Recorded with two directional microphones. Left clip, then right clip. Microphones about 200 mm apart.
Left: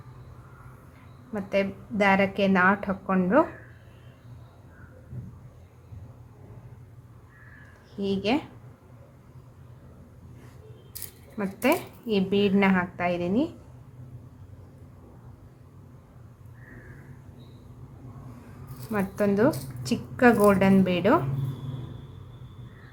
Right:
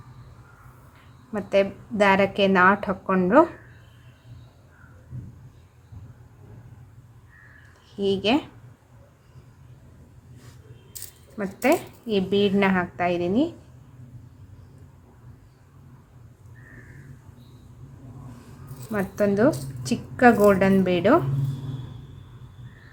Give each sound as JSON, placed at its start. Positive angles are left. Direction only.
{"t": 1.3, "sound": "a woman's voice", "side_deg": -15}
{"t": 7.9, "sound": "a woman's voice", "side_deg": -15}
{"t": 10.9, "sound": "speech", "side_deg": -5}
{"t": 18.9, "sound": "a woman's voice", "side_deg": -5}